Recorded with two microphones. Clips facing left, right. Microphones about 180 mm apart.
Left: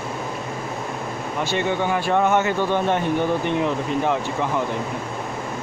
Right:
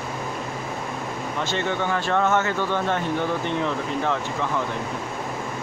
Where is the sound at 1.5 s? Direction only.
15° left (ahead or behind).